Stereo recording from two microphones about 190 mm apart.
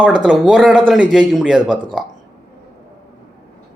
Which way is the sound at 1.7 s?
25° right (ahead or behind).